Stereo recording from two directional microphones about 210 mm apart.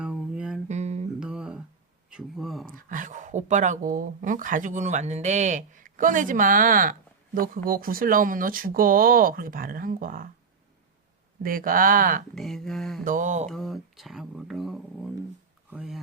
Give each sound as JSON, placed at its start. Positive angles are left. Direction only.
{"t": 0.0, "sound": "music", "side_deg": -5}
{"t": 0.7, "sound": "a sound", "side_deg": -30}
{"t": 1.2, "sound": "humming", "side_deg": -5}
{"t": 2.0, "sound": "speech", "side_deg": 0}
{"t": 2.7, "sound": "speech", "side_deg": -40}
{"t": 11.4, "sound": "speech", "side_deg": -40}
{"t": 12.3, "sound": "speech", "side_deg": 0}
{"t": 13.1, "sound": "speech", "side_deg": -35}
{"t": 13.5, "sound": "speech", "side_deg": 0}